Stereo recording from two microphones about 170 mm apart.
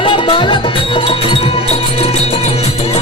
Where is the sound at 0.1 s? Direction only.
30° left (ahead or behind).